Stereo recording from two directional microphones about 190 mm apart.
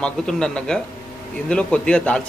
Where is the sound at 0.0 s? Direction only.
5° left (ahead or behind).